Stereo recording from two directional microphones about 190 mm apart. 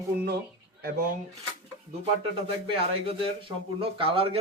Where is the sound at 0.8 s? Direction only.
50° right (ahead or behind).